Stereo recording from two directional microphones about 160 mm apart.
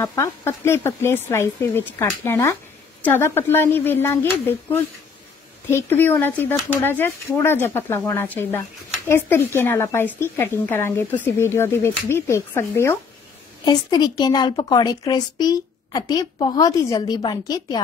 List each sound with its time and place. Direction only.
0.0 s a woman's voice: 20° left (ahead or behind)